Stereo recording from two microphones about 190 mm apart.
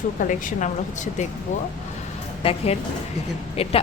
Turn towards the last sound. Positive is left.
turn(degrees=30)  # may be behind; listen again after turning